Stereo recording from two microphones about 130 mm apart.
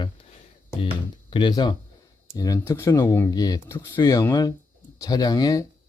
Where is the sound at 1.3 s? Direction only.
40° left (ahead or behind).